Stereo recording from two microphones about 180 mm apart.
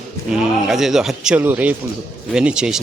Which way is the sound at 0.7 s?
Centre (ahead or behind).